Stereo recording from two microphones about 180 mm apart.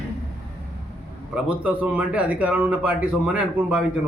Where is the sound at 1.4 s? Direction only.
10° right (ahead or behind).